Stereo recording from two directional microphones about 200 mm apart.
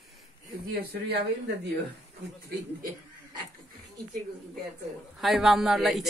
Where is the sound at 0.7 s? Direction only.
50° right (ahead or behind).